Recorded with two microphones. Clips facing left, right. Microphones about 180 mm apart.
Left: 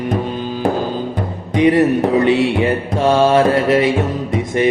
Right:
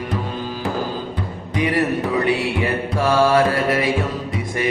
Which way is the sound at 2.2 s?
25° left (ahead or behind).